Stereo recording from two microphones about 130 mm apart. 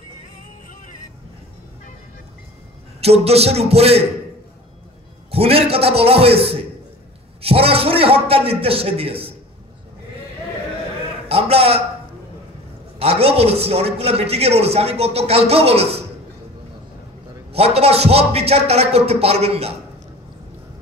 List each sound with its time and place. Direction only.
3.0 s a man's voice: 50° right (ahead or behind)
5.3 s a man's voice: 50° right (ahead or behind)
11.2 s a sound: 50° right (ahead or behind)
13.0 s a man's voice: 50° right (ahead or behind)
17.5 s a man's voice: 50° right (ahead or behind)